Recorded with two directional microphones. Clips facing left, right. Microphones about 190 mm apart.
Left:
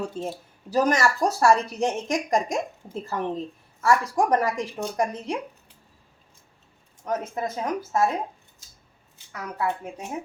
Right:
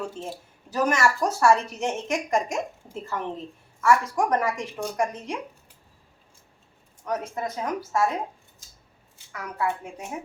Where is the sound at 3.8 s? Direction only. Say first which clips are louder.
Even; 35° left (ahead or behind).